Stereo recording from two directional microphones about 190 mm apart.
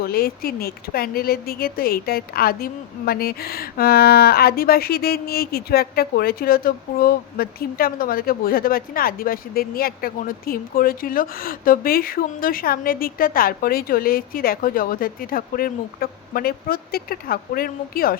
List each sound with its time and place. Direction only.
0.0 s speech: 50° left (ahead or behind)